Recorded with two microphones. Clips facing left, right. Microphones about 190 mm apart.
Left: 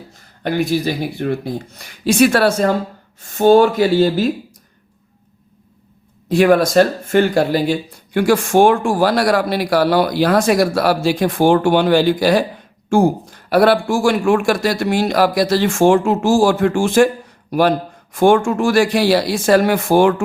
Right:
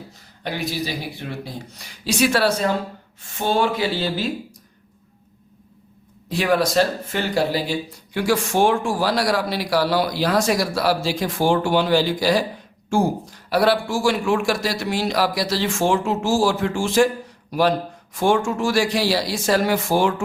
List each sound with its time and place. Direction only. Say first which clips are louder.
0.4 s a man's voice: left 9 dB; 50° left (ahead or behind)
6.2 s a man's voice: left 7 dB; 50° left (ahead or behind)